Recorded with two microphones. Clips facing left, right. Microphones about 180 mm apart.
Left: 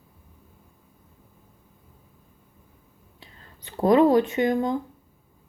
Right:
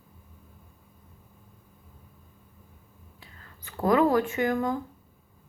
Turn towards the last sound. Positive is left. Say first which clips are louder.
# left 3 dB
turn(degrees=20)  # may be behind; listen again after turning